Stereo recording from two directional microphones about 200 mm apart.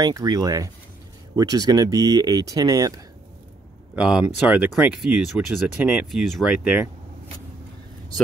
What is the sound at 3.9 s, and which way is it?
Speech, 5° right (ahead or behind).